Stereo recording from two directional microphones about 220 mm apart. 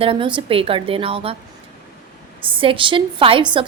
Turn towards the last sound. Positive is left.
turn(degrees=-20)  # may be behind; listen again after turning